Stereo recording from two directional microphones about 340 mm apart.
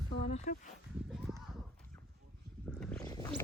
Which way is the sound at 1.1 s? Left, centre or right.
Centre.